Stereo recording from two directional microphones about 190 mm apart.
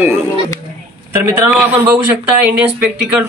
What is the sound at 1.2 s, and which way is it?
Speech, 10° right (ahead or behind).